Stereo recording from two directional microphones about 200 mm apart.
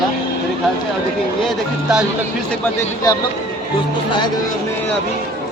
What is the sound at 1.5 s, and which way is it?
Speech, 5° right (ahead or behind).